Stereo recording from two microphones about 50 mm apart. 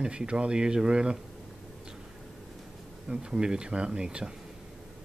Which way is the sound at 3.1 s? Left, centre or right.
Centre.